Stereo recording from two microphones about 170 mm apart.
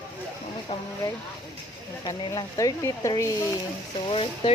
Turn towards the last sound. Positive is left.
turn(degrees=35)  # may be behind; listen again after turning